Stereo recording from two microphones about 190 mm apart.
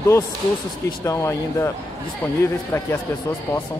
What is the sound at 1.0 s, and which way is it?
Speech, 15° left (ahead or behind).